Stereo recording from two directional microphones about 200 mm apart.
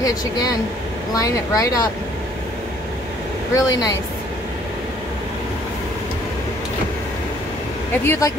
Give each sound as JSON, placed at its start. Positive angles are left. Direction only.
{"t": 0.0, "sound": "speech", "side_deg": 20}
{"t": 3.5, "sound": "speech", "side_deg": 15}
{"t": 8.0, "sound": "speech", "side_deg": 10}